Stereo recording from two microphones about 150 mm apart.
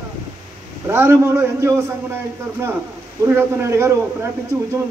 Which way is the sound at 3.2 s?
20° right (ahead or behind).